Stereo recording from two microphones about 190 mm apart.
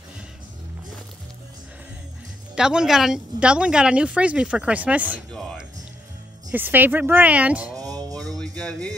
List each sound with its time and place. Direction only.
2.5 s speech: 5° right (ahead or behind)
6.5 s speech: 10° right (ahead or behind)
7.7 s music: 20° right (ahead or behind)
8.2 s music: 5° left (ahead or behind)